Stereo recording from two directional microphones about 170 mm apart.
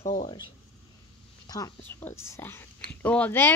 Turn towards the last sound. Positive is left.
turn(degrees=10)  # may be behind; listen again after turning